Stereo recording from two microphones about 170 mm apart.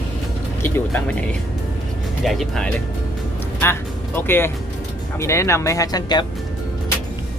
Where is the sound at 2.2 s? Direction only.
Centre (ahead or behind).